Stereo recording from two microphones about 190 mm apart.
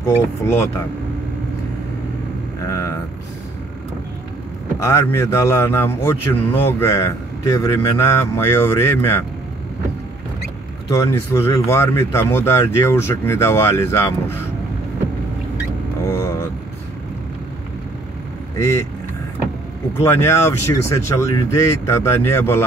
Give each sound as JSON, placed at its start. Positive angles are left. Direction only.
{"t": 0.4, "sound": "a man's voice", "side_deg": 15}
{"t": 2.6, "sound": "speech", "side_deg": 15}
{"t": 4.8, "sound": "a man's voice", "side_deg": 15}
{"t": 11.1, "sound": "a man's voice", "side_deg": 15}
{"t": 16.1, "sound": "vehicle", "side_deg": 15}
{"t": 20.0, "sound": "a man's voice", "side_deg": 15}